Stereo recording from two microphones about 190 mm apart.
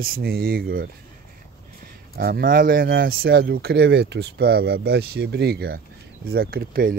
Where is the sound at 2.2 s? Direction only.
50° right (ahead or behind).